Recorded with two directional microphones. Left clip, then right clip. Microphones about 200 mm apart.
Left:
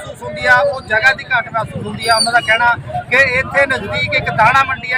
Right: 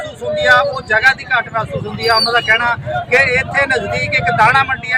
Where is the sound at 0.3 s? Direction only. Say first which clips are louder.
Even; 10° left (ahead or behind).